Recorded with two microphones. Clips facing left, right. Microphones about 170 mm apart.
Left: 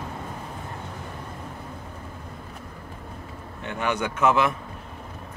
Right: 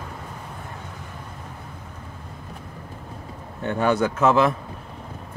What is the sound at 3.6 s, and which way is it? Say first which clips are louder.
Speech: right 6 dB; 35° right (ahead or behind).